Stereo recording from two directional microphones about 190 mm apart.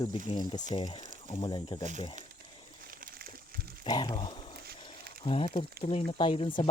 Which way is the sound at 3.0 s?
50° right (ahead or behind).